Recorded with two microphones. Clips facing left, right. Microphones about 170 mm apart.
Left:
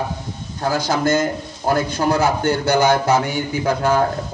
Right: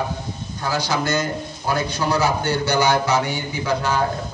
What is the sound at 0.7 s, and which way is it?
A man's voice, 50° left (ahead or behind).